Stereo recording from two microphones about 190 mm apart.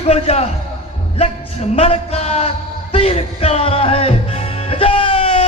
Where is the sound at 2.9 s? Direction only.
30° left (ahead or behind).